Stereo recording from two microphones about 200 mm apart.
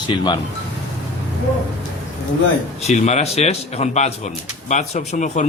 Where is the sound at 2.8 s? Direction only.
35° left (ahead or behind).